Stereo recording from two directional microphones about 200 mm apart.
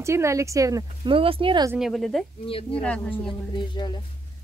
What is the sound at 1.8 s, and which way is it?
Speech, centre (ahead or behind).